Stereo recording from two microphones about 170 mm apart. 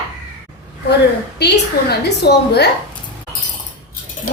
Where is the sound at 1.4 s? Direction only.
75° left (ahead or behind).